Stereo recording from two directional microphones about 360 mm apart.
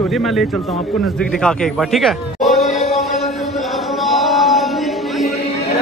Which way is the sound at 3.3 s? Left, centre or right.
Centre.